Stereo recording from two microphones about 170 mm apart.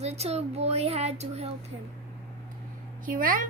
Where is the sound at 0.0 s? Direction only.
40° right (ahead or behind).